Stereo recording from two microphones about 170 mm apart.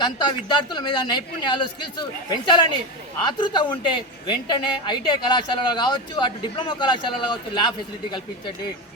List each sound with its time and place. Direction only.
0.0 s speech: 25° left (ahead or behind)